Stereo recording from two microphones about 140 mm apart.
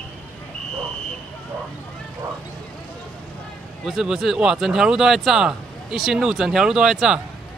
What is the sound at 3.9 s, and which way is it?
Speech, centre (ahead or behind).